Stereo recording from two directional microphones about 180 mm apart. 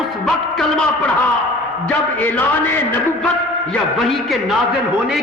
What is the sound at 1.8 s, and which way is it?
A man's voice, 10° left (ahead or behind).